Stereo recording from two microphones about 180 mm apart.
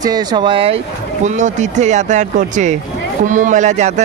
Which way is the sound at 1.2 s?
40° right (ahead or behind).